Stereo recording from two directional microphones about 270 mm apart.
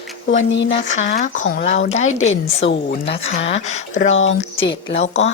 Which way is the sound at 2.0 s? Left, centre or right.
Left.